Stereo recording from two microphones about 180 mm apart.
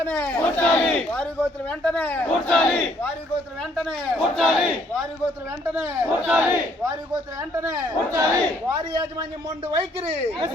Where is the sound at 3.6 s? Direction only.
Centre (ahead or behind).